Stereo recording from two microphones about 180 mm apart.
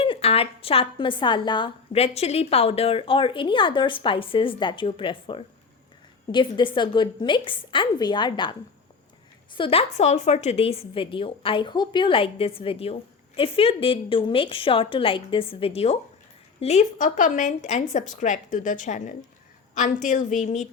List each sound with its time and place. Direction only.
0.0 s a woman's voice: 30° left (ahead or behind)
9.6 s a woman's voice: 30° left (ahead or behind)